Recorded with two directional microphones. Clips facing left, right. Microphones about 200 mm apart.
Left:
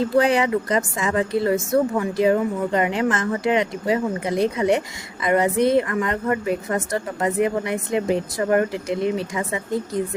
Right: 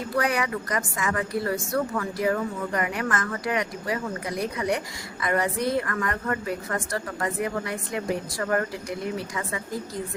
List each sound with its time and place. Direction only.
0.0 s a woman's voice: 25° left (ahead or behind)